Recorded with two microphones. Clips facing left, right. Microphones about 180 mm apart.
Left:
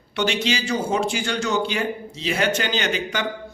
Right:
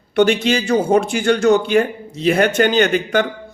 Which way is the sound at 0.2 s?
55° right (ahead or behind).